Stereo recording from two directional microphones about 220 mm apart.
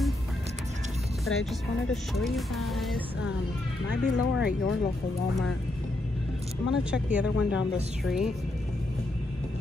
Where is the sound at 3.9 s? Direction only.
55° left (ahead or behind).